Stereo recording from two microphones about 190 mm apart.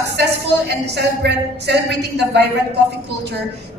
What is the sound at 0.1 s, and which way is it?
A woman's voice, 65° right (ahead or behind).